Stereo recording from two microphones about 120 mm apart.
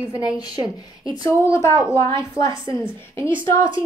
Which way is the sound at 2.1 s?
40° right (ahead or behind).